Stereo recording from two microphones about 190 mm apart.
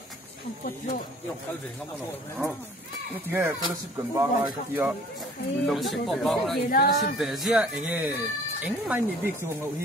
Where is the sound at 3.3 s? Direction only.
10° right (ahead or behind).